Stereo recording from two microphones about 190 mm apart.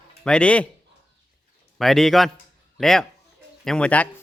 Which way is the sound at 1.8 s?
Centre (ahead or behind).